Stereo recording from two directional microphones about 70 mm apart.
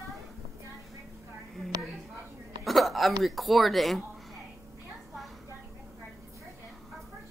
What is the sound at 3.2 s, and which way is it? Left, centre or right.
Speech, centre.